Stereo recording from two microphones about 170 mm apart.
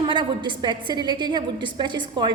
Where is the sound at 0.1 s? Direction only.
25° right (ahead or behind).